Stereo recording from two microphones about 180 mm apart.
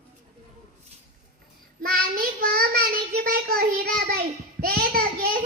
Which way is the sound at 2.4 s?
55° right (ahead or behind).